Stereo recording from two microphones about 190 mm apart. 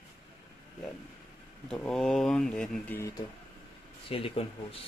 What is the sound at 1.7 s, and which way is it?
Speech, 5° left (ahead or behind).